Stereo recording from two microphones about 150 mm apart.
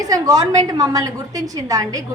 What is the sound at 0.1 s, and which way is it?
A woman's voice, 25° right (ahead or behind).